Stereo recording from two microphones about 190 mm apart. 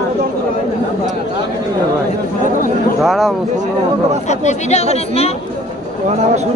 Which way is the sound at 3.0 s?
Centre (ahead or behind).